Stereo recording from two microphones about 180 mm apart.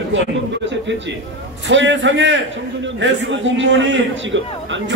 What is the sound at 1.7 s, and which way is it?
A man's voice, 90° right.